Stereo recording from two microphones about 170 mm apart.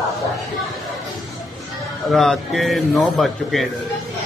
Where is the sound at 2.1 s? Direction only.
Centre (ahead or behind).